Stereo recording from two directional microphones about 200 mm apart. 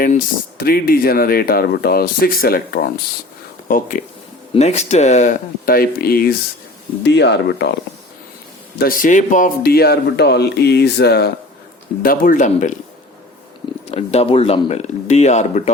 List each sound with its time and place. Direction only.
0.6 s speech: 50° left (ahead or behind)
8.8 s speech: 45° left (ahead or behind)
12.0 s speech: 40° left (ahead or behind)
13.9 s speech: 30° left (ahead or behind)